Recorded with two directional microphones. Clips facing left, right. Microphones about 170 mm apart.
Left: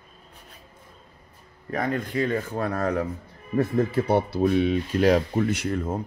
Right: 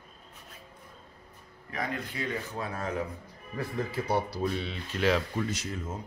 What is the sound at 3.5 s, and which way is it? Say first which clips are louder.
Speech: left 10 dB; 50° left (ahead or behind).